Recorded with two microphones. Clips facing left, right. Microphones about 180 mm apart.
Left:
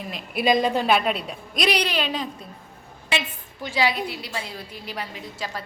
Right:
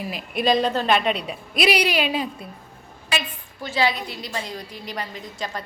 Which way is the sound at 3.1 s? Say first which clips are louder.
Even; 25° left (ahead or behind).